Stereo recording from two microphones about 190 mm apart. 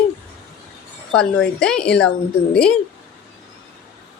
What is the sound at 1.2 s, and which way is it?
Speech, 5° left (ahead or behind).